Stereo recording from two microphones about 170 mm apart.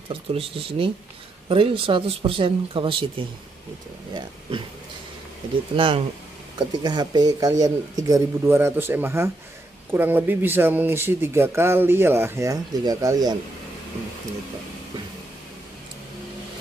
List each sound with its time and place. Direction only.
0.1 s speech: 35° right (ahead or behind)
5.8 s speech: 30° right (ahead or behind)